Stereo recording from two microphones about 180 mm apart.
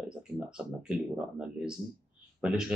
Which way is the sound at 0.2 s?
5° right (ahead or behind).